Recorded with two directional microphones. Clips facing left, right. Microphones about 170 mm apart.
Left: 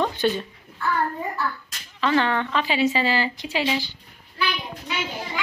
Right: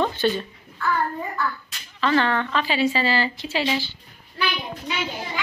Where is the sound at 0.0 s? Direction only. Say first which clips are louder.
Right 1 dB; 15° left (ahead or behind).